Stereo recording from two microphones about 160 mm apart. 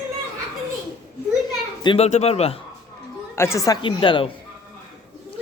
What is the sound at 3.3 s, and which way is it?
Speech, 15° left (ahead or behind).